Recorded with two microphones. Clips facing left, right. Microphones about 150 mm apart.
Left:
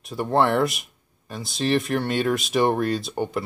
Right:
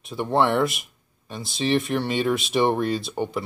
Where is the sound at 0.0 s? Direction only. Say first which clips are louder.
Left 1 dB; centre (ahead or behind).